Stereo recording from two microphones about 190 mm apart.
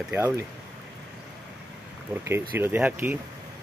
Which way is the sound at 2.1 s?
10° right (ahead or behind).